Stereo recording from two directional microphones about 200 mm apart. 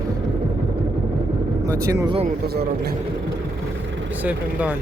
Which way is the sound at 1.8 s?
15° right (ahead or behind).